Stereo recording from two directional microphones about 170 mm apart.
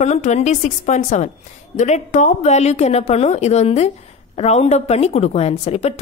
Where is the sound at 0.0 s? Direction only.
45° left (ahead or behind).